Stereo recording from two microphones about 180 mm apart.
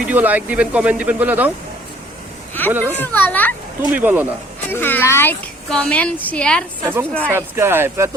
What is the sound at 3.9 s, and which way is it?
Speech, 10° right (ahead or behind).